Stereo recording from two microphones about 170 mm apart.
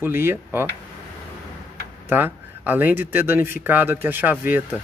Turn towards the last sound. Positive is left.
turn(degrees=-10)  # may be behind; listen again after turning